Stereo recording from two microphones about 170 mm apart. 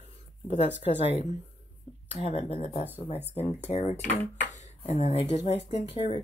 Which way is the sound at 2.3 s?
30° left (ahead or behind).